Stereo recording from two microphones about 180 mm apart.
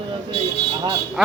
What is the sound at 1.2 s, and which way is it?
Speech, centre (ahead or behind).